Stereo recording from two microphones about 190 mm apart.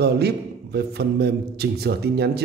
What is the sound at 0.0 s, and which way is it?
A man's voice, 60° right (ahead or behind).